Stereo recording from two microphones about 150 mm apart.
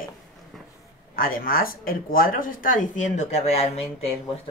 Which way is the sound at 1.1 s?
75° left (ahead or behind).